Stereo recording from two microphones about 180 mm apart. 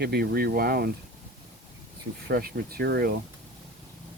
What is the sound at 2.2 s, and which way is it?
Speech, 60° right (ahead or behind).